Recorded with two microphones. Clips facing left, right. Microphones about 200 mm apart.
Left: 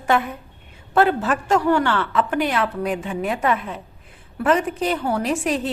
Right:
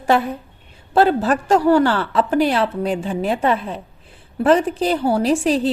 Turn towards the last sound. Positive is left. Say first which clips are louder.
# right 5 dB
turn(degrees=-30)  # may be behind; listen again after turning